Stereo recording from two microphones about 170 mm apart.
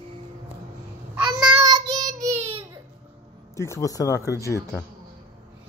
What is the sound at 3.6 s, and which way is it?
Speech, 15° left (ahead or behind).